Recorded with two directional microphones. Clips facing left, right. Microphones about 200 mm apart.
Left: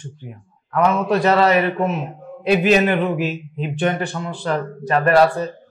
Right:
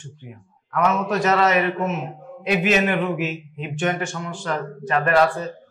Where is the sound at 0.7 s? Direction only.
30° left (ahead or behind).